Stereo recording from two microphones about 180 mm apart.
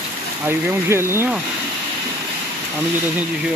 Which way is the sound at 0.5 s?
15° right (ahead or behind).